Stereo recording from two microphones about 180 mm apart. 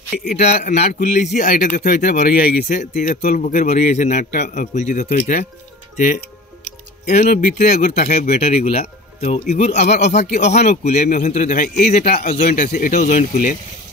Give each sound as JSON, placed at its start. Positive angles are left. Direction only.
{"t": 0.2, "sound": "speech", "side_deg": 40}
{"t": 7.2, "sound": "speech", "side_deg": 55}